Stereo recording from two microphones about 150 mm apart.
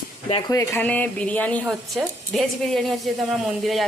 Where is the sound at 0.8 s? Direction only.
10° left (ahead or behind).